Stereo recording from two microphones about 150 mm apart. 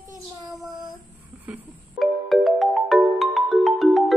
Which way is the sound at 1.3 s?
10° right (ahead or behind).